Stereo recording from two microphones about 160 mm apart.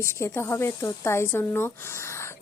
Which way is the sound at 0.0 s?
15° left (ahead or behind).